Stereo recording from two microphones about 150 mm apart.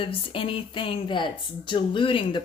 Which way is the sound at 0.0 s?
35° left (ahead or behind).